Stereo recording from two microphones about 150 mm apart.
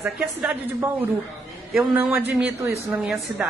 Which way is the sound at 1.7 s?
10° right (ahead or behind).